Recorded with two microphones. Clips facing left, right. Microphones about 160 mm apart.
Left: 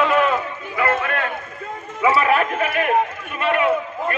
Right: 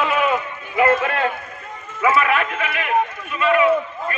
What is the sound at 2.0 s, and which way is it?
A man's voice, 30° left (ahead or behind).